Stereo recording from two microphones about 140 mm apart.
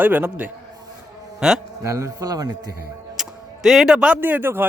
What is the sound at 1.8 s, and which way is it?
Music, 20° right (ahead or behind).